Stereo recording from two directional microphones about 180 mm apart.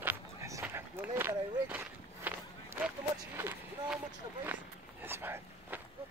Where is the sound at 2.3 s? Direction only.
10° right (ahead or behind).